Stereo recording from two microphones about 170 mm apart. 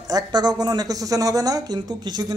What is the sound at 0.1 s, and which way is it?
Speech, 25° right (ahead or behind).